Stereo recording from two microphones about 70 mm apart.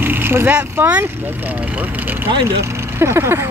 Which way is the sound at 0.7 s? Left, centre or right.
Right.